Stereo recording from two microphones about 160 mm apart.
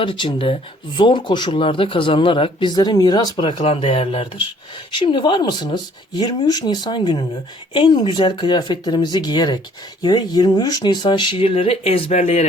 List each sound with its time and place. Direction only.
0.0 s speech: 30° left (ahead or behind)